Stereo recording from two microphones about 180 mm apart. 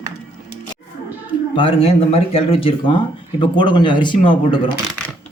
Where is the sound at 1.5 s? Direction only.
30° left (ahead or behind).